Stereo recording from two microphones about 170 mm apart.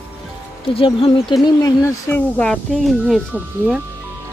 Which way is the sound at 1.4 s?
20° left (ahead or behind).